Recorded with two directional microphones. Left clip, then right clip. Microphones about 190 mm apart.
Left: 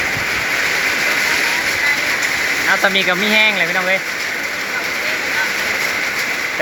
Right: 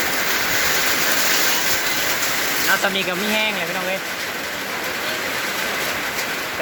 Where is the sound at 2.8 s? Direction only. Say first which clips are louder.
Left 6 dB; 25° left (ahead or behind).